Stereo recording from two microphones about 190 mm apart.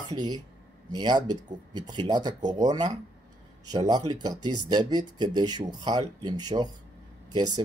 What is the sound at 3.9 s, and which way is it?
Speech, 20° right (ahead or behind).